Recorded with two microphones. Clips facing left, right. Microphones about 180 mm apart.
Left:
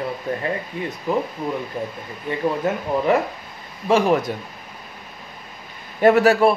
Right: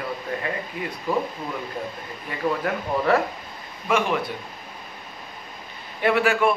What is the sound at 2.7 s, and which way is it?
Speech, 25° left (ahead or behind).